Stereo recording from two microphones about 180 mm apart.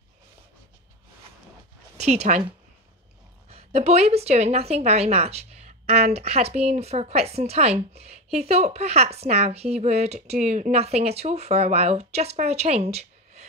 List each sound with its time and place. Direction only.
2.0 s speech: 40° right (ahead or behind)
3.4 s speech: 35° right (ahead or behind)